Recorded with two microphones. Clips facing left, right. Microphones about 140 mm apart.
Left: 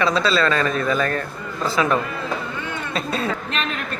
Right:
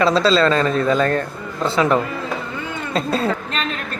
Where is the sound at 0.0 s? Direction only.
30° right (ahead or behind).